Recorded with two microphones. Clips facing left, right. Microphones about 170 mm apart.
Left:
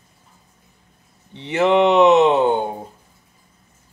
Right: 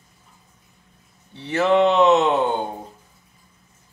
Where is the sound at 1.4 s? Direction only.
20° left (ahead or behind).